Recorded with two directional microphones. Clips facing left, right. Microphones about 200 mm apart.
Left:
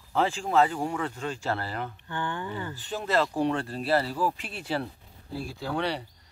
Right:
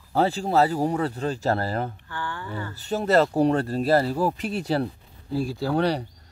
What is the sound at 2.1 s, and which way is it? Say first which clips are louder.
Speech: left 1 dB; 20° left (ahead or behind).